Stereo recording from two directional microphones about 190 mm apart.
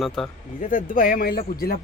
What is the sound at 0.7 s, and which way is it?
A man's voice, 45° left (ahead or behind).